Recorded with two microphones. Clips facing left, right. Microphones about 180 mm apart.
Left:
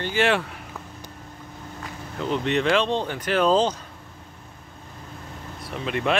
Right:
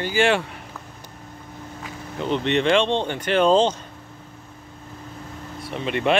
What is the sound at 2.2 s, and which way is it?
Speech, centre (ahead or behind).